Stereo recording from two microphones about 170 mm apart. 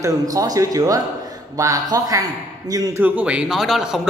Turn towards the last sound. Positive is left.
turn(degrees=0)  # may be behind; listen again after turning